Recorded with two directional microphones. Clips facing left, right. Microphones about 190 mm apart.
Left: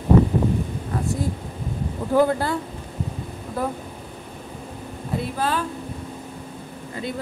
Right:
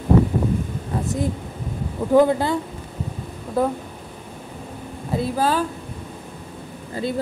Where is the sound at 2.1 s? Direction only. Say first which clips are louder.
Right 3 dB; 15° right (ahead or behind).